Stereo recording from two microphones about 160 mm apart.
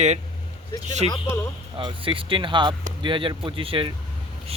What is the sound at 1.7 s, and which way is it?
Speech, 30° right (ahead or behind).